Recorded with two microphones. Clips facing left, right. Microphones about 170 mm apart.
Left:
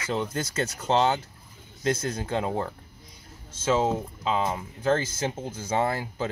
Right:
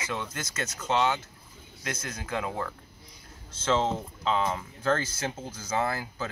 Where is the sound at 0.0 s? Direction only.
30° left (ahead or behind).